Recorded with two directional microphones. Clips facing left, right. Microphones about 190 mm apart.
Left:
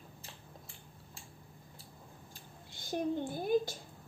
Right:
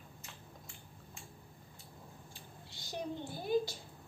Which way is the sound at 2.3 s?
50° left (ahead or behind).